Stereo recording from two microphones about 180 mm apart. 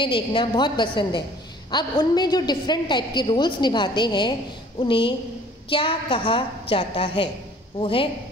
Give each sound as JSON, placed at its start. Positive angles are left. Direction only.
{"t": 0.0, "sound": "a woman's voice", "side_deg": 25}